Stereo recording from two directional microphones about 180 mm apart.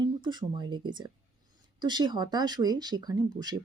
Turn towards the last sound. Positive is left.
turn(degrees=-25)  # may be behind; listen again after turning